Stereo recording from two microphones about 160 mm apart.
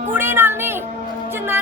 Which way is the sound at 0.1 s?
15° right (ahead or behind).